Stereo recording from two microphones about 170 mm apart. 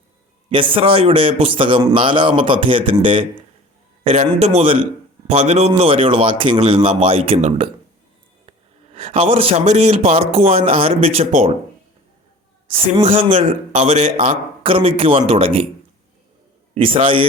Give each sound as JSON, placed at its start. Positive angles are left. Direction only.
{"t": 0.5, "sound": "speech", "side_deg": -30}
{"t": 9.0, "sound": "speech", "side_deg": -35}
{"t": 12.6, "sound": "speech", "side_deg": -35}
{"t": 16.7, "sound": "speech", "side_deg": -30}